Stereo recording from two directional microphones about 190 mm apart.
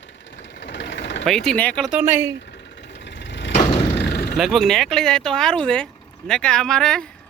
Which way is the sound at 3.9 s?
60° left (ahead or behind).